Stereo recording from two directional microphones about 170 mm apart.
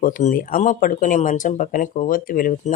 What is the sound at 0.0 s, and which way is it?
Speech, 50° left (ahead or behind).